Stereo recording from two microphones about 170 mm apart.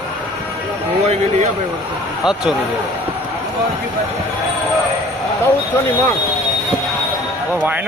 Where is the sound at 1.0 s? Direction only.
40° right (ahead or behind).